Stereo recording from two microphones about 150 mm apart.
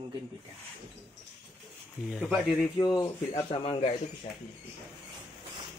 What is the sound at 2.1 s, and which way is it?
Speech, 5° right (ahead or behind).